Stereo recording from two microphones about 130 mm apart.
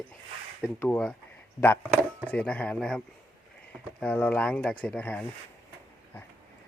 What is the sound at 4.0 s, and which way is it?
Speech, 10° left (ahead or behind).